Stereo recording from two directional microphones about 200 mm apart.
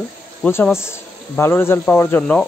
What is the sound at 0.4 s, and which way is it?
Speech, 10° left (ahead or behind).